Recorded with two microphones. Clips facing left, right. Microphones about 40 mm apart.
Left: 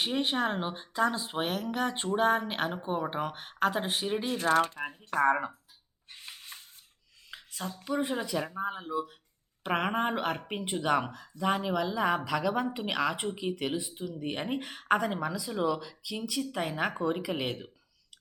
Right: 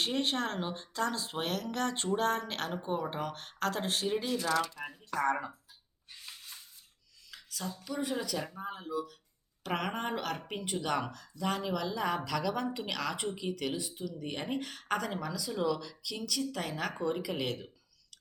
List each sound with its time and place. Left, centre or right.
0.0 s speech: centre
4.3 s speech: left
5.2 s speech: left
6.1 s a sound: left
7.3 s speech: left